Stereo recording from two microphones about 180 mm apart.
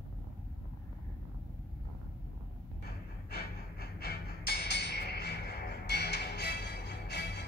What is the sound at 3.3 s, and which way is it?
Music, 60° left (ahead or behind).